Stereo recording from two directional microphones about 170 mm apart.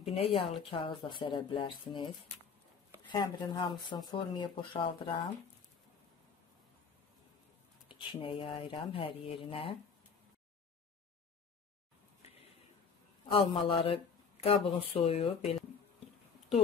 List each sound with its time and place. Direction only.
0.1 s speech: 35° left (ahead or behind)
3.1 s speech: 25° left (ahead or behind)
7.9 s speech: 30° left (ahead or behind)
13.3 s speech: 30° left (ahead or behind)